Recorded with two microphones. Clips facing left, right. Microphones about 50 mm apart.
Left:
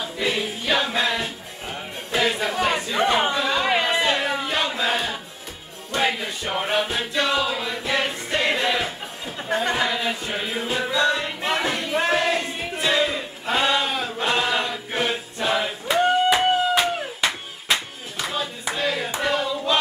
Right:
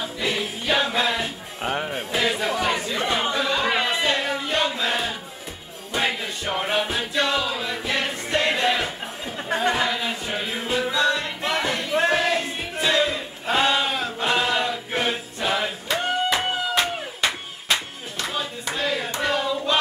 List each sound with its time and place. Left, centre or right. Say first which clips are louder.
0.7 s music: right 1 dB; centre
1.6 s music: right 8 dB; right
2.1 s chatter: left 2 dB; centre
2.6 s chatter: left 2 dB; centre
3.3 s a sound: left 1 dB; centre
5.9 s music: left 2 dB; centre
12.4 s choir: even; centre
15.9 s a sound: left 6 dB; centre